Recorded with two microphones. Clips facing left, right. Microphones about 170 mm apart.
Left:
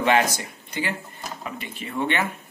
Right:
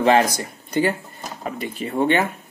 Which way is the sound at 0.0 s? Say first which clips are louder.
Right 4 dB; 35° right (ahead or behind).